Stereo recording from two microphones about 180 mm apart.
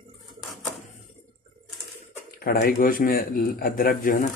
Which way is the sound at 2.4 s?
55° left (ahead or behind).